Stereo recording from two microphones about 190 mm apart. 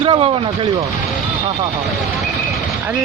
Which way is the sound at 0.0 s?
25° right (ahead or behind).